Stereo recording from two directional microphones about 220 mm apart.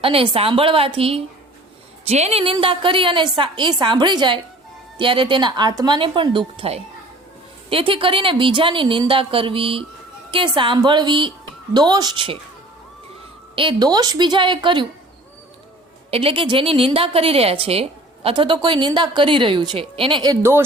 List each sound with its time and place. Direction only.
0.0 s a woman's voice: 25° right (ahead or behind)
13.6 s a woman's voice: 20° right (ahead or behind)
16.0 s a woman's voice: 25° right (ahead or behind)